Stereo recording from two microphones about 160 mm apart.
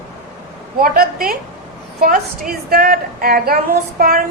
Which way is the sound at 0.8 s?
65° right (ahead or behind).